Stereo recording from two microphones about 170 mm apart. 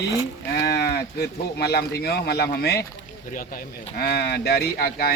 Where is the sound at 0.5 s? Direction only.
75° left (ahead or behind).